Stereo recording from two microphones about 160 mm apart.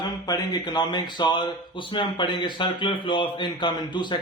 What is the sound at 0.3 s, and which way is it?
Speech, 25° left (ahead or behind).